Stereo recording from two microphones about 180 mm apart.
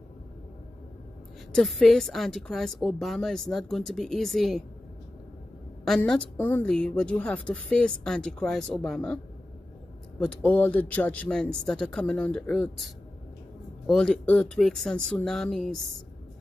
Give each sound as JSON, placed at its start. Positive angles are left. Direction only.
{"t": 1.5, "sound": "a woman's voice", "side_deg": 0}
{"t": 5.9, "sound": "a woman's voice", "side_deg": 5}